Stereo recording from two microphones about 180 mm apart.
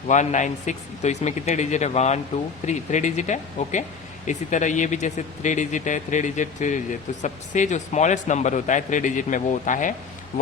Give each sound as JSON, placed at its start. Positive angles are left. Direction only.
{"t": 0.1, "sound": "a man's voice", "side_deg": 40}